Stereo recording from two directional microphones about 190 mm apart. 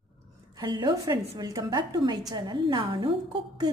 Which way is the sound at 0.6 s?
20° right (ahead or behind).